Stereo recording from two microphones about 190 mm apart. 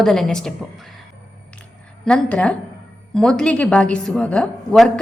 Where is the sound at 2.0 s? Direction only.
5° left (ahead or behind).